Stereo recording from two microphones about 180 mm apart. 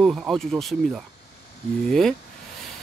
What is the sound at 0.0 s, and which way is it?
Speech, centre (ahead or behind).